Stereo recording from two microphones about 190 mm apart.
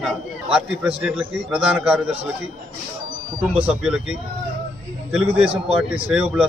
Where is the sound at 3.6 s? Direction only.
5° right (ahead or behind).